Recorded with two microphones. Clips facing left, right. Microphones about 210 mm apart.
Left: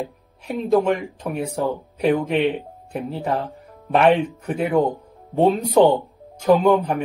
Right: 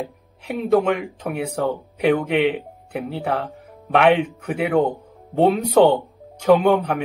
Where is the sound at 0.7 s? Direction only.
Centre (ahead or behind).